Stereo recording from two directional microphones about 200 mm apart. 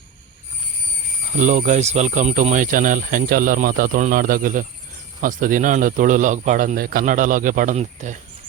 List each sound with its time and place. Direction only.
1.4 s speech: 35° right (ahead or behind)